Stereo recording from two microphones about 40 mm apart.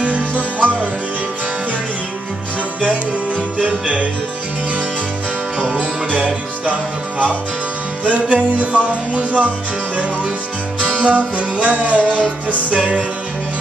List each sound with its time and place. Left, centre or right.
0.4 s music: right
5.6 s music: right
8.0 s music: right
11.0 s music: right